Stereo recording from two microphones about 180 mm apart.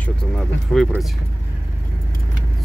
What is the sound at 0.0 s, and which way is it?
Speech, 5° left (ahead or behind).